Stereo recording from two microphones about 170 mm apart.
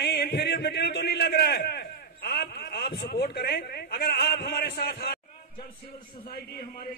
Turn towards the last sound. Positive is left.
turn(degrees=65)  # may be behind; listen again after turning